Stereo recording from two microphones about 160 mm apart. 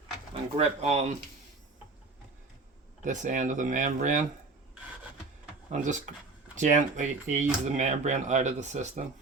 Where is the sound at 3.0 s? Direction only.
50° right (ahead or behind).